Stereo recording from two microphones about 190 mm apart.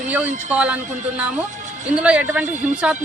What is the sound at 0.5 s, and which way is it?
A man's voice, 10° right (ahead or behind).